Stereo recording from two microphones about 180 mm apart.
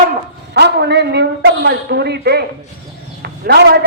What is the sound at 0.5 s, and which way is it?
A man's voice, 70° right (ahead or behind).